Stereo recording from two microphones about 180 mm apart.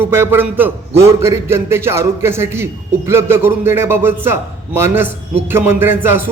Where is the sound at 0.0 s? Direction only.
10° right (ahead or behind).